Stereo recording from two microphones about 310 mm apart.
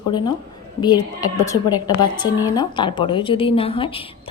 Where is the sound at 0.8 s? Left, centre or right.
Centre.